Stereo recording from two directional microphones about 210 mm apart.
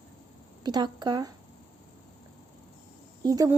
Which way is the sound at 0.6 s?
20° right (ahead or behind).